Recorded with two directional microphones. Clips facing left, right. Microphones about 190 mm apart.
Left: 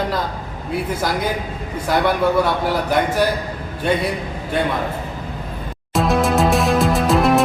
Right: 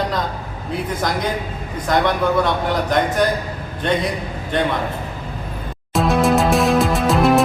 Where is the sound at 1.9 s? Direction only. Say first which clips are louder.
Even; 5° left (ahead or behind).